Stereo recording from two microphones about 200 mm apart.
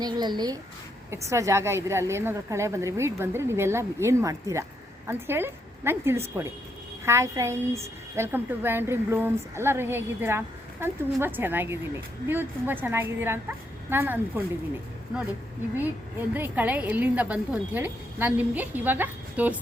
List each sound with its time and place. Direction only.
0.0 s a woman's voice: 20° right (ahead or behind)
16.3 s a woman's voice: 10° right (ahead or behind)